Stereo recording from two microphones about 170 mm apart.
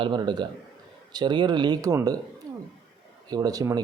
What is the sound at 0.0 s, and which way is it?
Speech, 25° right (ahead or behind).